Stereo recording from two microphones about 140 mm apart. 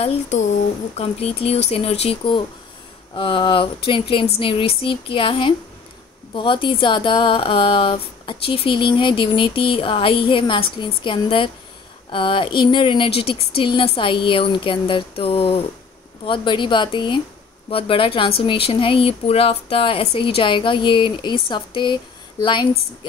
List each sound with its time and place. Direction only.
0.0 s a woman's voice: 55° left (ahead or behind); by 22.7 s 35° left (ahead or behind)